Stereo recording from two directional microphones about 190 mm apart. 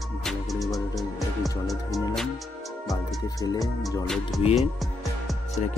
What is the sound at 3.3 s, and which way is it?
Speech, 20° left (ahead or behind).